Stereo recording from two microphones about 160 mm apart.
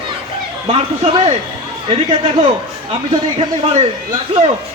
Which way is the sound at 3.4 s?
40° right (ahead or behind).